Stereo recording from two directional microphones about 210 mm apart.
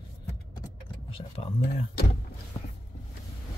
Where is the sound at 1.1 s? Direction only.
25° left (ahead or behind).